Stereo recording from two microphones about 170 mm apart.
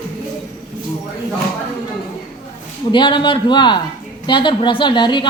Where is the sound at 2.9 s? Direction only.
30° left (ahead or behind).